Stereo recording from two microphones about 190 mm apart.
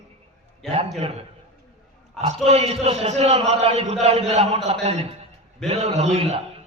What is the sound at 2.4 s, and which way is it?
A man's voice, 35° right (ahead or behind).